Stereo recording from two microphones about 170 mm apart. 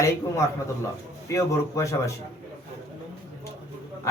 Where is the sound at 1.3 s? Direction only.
20° left (ahead or behind).